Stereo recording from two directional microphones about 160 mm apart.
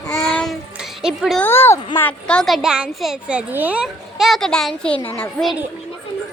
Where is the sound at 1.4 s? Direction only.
15° left (ahead or behind).